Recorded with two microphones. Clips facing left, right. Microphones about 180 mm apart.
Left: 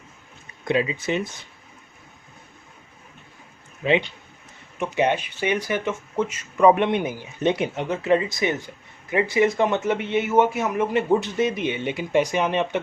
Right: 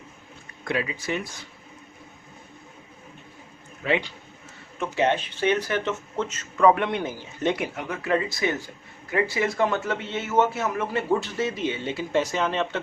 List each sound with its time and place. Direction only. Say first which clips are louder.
0.6 s speech: left 5 dB; 20° left (ahead or behind)
3.8 s speech: left 4 dB; 20° left (ahead or behind)